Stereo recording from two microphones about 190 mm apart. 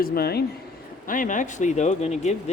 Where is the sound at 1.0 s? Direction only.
45° left (ahead or behind).